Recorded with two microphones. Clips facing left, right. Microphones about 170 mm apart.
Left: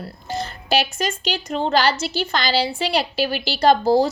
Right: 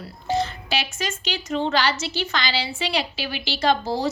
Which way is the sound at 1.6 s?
40° left (ahead or behind).